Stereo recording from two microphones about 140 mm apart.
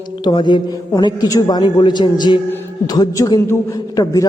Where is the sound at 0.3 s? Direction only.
35° left (ahead or behind).